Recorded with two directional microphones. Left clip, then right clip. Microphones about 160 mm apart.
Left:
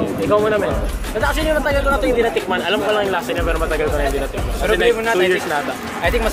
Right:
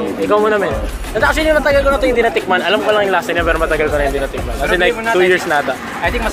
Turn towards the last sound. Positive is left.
turn(degrees=-25)  # may be behind; listen again after turning